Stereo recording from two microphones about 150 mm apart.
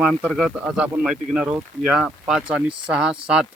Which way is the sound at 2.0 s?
5° right (ahead or behind).